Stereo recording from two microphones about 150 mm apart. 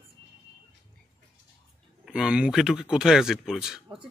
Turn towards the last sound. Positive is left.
turn(degrees=-5)  # may be behind; listen again after turning